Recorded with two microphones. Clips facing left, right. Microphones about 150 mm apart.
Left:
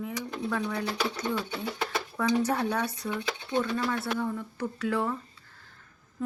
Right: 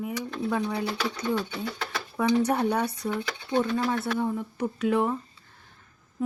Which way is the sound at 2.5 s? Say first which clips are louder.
Right 3 dB; 20° right (ahead or behind).